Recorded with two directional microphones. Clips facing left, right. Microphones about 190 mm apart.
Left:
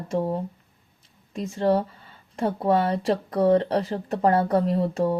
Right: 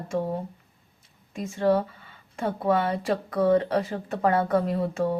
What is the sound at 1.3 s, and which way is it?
Speech, 35° left (ahead or behind).